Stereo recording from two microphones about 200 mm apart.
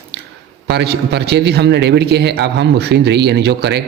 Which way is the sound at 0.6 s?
55° right (ahead or behind).